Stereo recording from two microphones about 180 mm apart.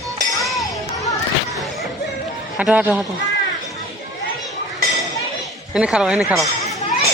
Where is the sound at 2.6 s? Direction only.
5° right (ahead or behind).